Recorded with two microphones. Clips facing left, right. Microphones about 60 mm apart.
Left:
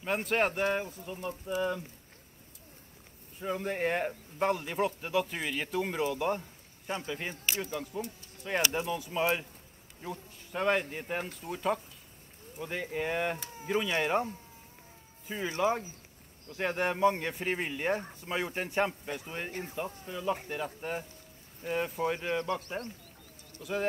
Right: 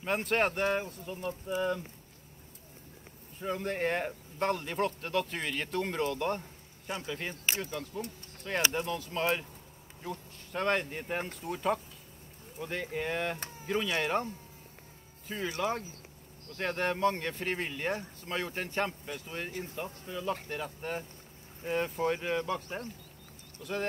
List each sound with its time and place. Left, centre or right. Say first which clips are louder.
0.0 s a man's voice: even; centre
3.3 s a man's voice: even; centre
23.6 s speech: left 2 dB; centre